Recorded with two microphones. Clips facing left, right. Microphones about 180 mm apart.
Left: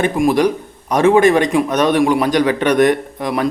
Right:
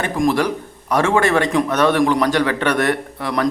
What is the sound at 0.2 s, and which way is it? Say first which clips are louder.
A man's voice: left 1 dB; 15° left (ahead or behind).